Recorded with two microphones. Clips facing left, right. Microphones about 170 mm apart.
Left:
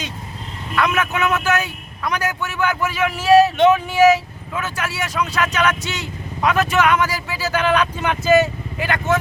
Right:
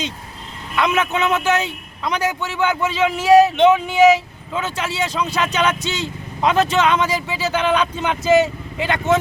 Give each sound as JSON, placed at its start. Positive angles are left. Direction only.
{"t": 0.8, "sound": "a man's voice", "side_deg": -25}